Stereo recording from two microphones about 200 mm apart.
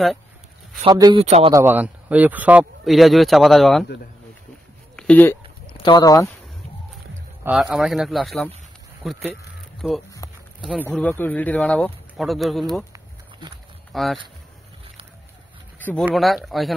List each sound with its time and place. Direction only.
0.8 s a man's voice: 20° right (ahead or behind)
1.5 s speech: 10° right (ahead or behind)
4.9 s speech: 5° left (ahead or behind)
5.7 s speech: 25° left (ahead or behind)
7.4 s speech: 5° right (ahead or behind)
13.9 s speech: centre (ahead or behind)
15.8 s speech: 10° left (ahead or behind)